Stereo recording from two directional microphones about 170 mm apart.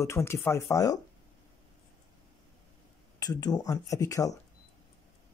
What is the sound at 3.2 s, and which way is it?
Speech, 20° left (ahead or behind).